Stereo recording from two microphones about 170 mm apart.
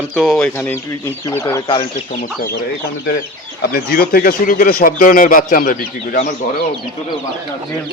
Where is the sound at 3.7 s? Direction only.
65° left (ahead or behind).